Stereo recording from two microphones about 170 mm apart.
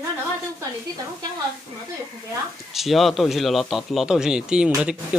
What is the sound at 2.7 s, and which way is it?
Speech, centre (ahead or behind).